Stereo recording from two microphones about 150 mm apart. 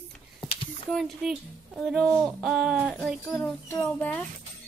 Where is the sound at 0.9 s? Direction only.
Centre (ahead or behind).